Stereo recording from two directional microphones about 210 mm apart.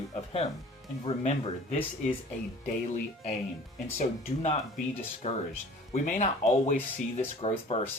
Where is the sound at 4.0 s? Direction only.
35° left (ahead or behind).